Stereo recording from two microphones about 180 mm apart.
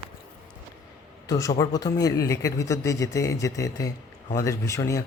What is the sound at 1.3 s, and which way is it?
A man's voice, 20° left (ahead or behind).